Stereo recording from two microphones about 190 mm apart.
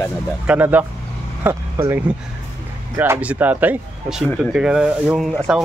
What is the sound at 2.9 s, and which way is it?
Speech, 10° right (ahead or behind).